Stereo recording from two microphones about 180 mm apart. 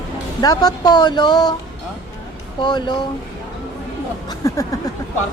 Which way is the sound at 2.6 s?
25° left (ahead or behind).